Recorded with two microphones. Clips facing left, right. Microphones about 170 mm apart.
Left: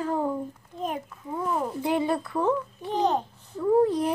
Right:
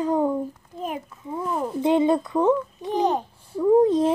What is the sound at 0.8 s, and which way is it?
Speech, 5° right (ahead or behind).